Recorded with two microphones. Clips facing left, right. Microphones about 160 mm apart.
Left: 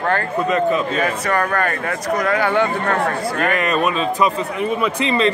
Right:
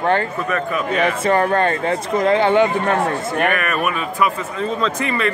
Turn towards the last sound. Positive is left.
turn(degrees=20)  # may be behind; listen again after turning